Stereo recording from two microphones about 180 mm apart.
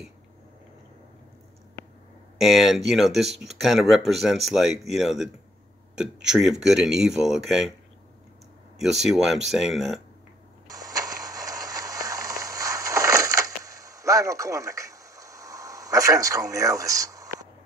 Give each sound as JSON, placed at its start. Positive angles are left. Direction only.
{"t": 2.3, "sound": "speech", "side_deg": 0}
{"t": 8.7, "sound": "speech", "side_deg": 0}
{"t": 10.7, "sound": "a sound", "side_deg": -20}